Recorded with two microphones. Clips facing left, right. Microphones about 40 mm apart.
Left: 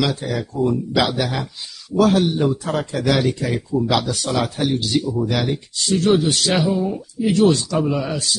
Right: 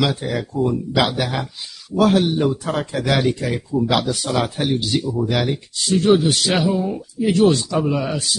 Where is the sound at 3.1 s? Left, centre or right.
Centre.